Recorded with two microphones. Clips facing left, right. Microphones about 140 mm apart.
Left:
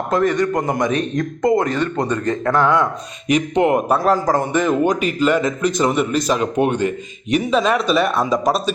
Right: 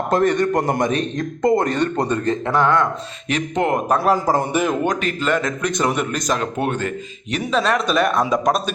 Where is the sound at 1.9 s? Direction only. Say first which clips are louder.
Even; 30° right (ahead or behind).